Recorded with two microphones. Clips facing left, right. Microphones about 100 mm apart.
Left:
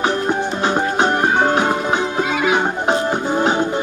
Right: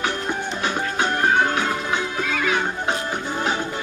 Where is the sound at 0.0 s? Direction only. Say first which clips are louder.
Left 7 dB; 25° left (ahead or behind).